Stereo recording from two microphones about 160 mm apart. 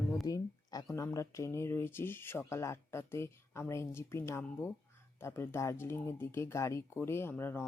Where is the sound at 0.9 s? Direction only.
20° left (ahead or behind).